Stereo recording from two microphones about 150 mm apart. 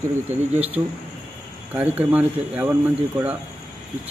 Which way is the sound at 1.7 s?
10° right (ahead or behind).